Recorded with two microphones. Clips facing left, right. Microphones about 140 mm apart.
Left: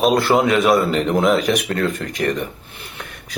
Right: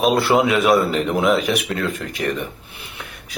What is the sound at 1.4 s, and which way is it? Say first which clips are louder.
Speech: left 2 dB; 40° left (ahead or behind).